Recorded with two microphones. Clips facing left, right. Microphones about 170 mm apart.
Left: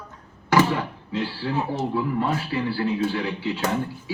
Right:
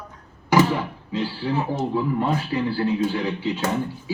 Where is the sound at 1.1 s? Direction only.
20° right (ahead or behind).